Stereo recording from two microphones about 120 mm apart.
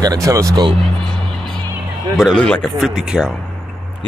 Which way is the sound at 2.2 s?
5° left (ahead or behind).